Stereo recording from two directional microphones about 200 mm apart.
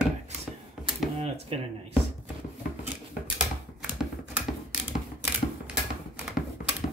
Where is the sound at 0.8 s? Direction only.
5° right (ahead or behind).